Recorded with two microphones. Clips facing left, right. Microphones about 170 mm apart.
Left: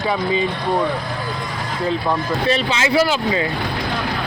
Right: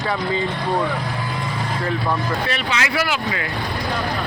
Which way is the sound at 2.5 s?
25° left (ahead or behind).